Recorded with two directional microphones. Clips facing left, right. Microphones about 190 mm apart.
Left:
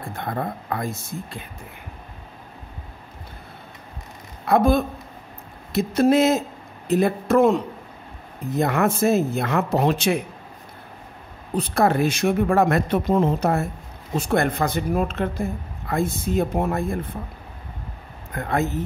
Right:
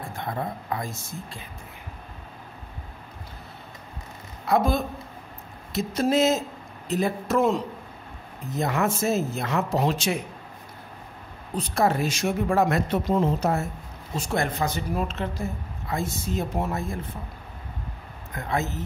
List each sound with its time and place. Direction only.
0.2 s a woman's voice: 55° left (ahead or behind)
4.5 s a woman's voice: 55° left (ahead or behind)
11.5 s a woman's voice: 60° left (ahead or behind)
18.3 s a woman's voice: 55° left (ahead or behind)